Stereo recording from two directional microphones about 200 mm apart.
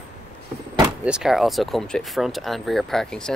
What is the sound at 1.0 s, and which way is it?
Speech, 5° right (ahead or behind).